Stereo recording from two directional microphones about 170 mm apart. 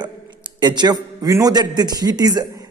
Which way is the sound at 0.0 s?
25° right (ahead or behind).